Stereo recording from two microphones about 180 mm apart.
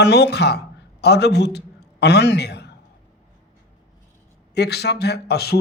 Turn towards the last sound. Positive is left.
turn(degrees=60)  # may be behind; listen again after turning